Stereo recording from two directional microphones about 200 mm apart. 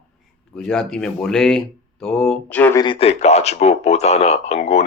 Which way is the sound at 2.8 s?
25° left (ahead or behind).